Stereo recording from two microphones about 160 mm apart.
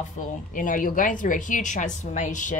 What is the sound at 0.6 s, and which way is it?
Speech, 55° left (ahead or behind).